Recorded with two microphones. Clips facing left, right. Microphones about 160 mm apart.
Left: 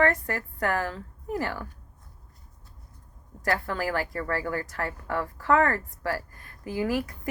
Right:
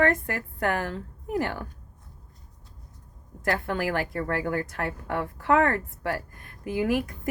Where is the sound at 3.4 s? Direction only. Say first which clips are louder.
Right 1 dB; 50° right (ahead or behind).